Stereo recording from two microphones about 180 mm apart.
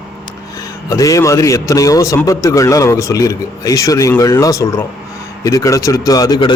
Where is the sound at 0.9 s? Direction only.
20° left (ahead or behind).